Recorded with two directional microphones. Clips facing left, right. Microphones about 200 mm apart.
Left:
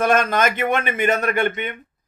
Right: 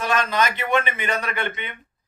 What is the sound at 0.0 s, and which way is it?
A man's voice, 50° left (ahead or behind).